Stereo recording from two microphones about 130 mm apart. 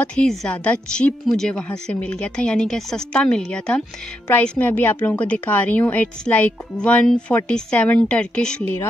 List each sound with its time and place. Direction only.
0.0 s a woman's voice: 5° left (ahead or behind)